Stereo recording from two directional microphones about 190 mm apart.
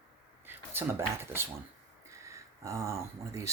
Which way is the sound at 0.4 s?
10° right (ahead or behind).